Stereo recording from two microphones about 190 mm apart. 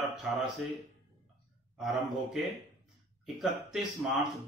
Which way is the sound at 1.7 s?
Centre (ahead or behind).